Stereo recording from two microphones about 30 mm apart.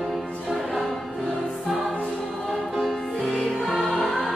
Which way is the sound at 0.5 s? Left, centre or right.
Centre.